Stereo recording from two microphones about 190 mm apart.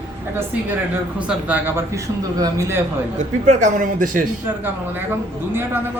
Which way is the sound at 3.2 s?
40° right (ahead or behind).